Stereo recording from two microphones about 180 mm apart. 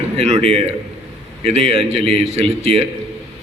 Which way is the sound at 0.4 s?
35° right (ahead or behind).